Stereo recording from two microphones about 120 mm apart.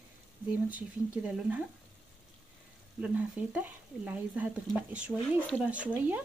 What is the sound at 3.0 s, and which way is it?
Speech, 15° right (ahead or behind).